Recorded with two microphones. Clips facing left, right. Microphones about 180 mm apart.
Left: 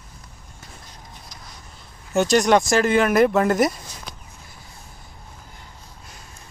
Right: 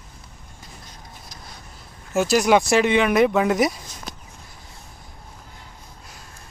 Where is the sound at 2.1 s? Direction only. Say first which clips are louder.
Left 1 dB; 5° right (ahead or behind).